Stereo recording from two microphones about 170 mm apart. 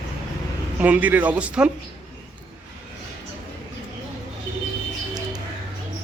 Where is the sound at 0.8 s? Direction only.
10° right (ahead or behind).